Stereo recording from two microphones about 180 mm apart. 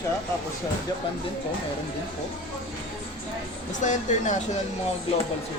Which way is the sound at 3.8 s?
40° left (ahead or behind).